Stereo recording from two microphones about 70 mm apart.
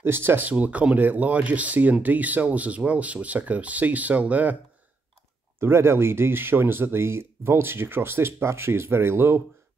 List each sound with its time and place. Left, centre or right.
0.0 s speech: right
0.5 s speech: right
5.6 s speech: right